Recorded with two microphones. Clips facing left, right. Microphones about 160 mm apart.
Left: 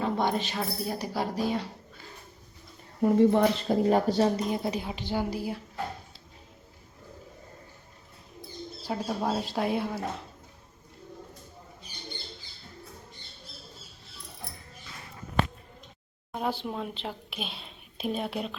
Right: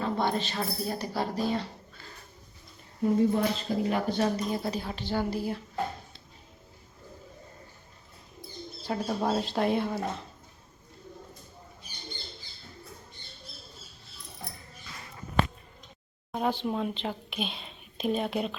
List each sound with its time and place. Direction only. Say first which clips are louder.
0.0 s speech: left 1 dB; 15° left (ahead or behind)
3.0 s speech: left 4 dB; 65° left (ahead or behind)
3.8 s speech: left 5 dB; 40° left (ahead or behind)
4.4 s speech: left 1 dB; 20° left (ahead or behind)
8.8 s speech: right 1 dB; 5° left (ahead or behind)
16.3 s speech: right 2 dB; 5° left (ahead or behind)